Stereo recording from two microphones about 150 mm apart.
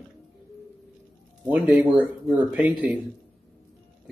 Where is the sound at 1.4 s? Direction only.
10° right (ahead or behind).